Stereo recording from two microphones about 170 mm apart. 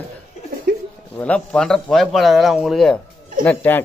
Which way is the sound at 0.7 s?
60° right (ahead or behind).